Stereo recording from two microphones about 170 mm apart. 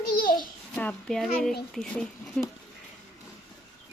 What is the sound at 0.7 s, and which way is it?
A child's voice, 5° left (ahead or behind).